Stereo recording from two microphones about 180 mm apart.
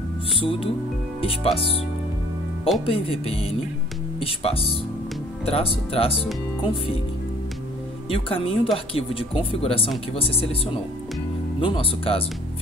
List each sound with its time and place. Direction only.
0.4 s speech: 30° left (ahead or behind)
2.8 s speech: 30° left (ahead or behind)
8.1 s speech: 30° left (ahead or behind)
11.6 s speech: 30° left (ahead or behind)